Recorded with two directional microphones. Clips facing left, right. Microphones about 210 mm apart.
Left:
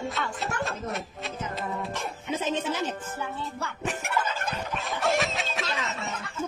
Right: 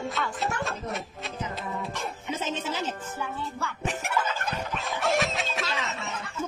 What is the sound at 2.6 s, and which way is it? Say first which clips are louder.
Music: left 2 dB; 55° left (ahead or behind).